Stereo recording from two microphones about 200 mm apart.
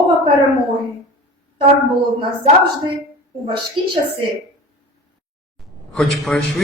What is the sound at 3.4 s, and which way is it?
Speech, 25° right (ahead or behind).